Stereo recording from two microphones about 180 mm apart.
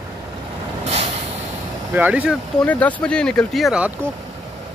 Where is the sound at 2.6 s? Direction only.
10° left (ahead or behind).